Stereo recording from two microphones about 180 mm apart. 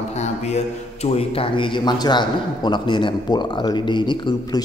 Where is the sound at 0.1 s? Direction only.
40° left (ahead or behind).